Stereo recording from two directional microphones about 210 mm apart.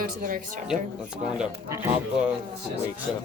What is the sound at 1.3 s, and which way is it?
Speech, 5° right (ahead or behind).